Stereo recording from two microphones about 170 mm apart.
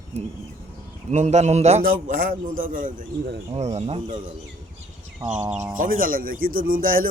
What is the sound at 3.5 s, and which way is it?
Speech, 40° right (ahead or behind).